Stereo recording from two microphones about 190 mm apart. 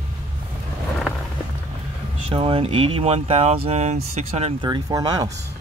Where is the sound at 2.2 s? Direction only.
30° right (ahead or behind).